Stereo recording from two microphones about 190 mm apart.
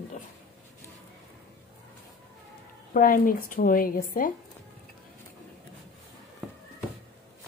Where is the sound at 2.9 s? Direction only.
50° left (ahead or behind).